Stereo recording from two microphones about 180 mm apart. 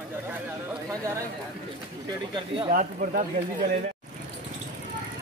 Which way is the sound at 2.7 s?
50° right (ahead or behind).